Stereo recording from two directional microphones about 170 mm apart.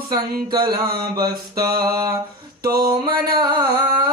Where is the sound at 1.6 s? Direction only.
60° right (ahead or behind).